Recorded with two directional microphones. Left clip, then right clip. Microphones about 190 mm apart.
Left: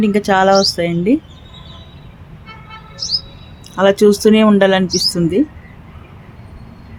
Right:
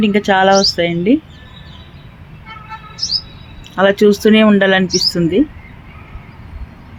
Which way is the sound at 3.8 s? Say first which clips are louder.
Even; centre (ahead or behind).